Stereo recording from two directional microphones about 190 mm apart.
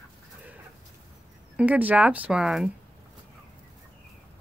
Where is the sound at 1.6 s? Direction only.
10° right (ahead or behind).